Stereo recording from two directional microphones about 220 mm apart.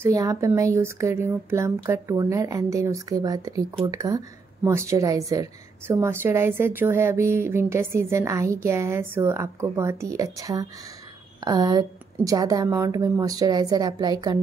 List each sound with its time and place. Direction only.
0.0 s a woman's voice: 15° right (ahead or behind)